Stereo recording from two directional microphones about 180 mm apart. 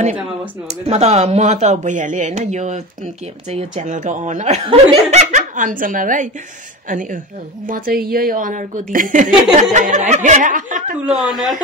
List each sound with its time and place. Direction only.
0.8 s a woman's voice: 40° right (ahead or behind)
11.2 s speech: centre (ahead or behind)